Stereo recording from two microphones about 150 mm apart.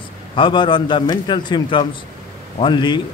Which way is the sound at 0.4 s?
30° left (ahead or behind).